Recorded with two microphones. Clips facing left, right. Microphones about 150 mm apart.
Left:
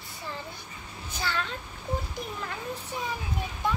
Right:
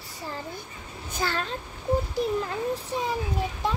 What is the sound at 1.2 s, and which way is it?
Speech, 40° right (ahead or behind).